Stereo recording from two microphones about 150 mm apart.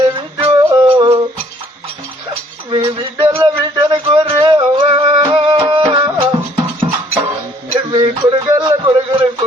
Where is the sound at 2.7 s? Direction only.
30° right (ahead or behind).